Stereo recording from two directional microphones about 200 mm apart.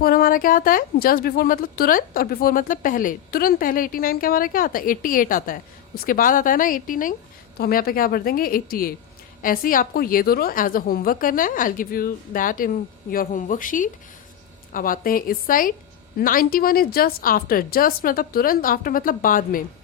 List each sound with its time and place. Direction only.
0.0 s speech: 45° left (ahead or behind)